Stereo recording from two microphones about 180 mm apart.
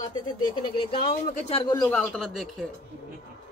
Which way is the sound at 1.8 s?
5° left (ahead or behind).